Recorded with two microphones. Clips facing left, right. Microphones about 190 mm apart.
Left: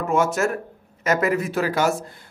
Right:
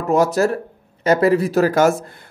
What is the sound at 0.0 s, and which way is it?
Speech, 35° right (ahead or behind).